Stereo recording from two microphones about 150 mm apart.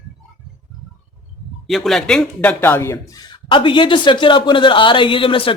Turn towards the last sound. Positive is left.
turn(degrees=35)  # may be behind; listen again after turning